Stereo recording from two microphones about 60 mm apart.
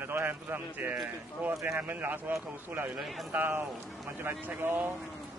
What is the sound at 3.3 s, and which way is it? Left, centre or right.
Speech, right.